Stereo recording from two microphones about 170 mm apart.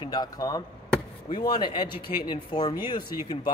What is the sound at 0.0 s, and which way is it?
Speech, 25° left (ahead or behind).